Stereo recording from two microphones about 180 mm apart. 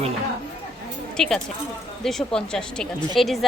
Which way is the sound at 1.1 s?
5° left (ahead or behind).